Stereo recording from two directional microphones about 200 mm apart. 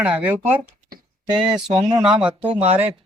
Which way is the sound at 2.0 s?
5° right (ahead or behind).